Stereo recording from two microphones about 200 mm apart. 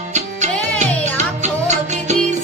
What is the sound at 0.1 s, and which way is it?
Music, 35° right (ahead or behind).